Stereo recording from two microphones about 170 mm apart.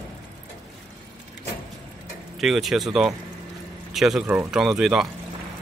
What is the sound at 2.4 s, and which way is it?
Speech, centre (ahead or behind).